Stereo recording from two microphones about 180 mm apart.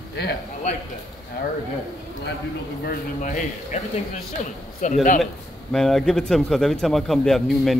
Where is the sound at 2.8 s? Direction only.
45° left (ahead or behind).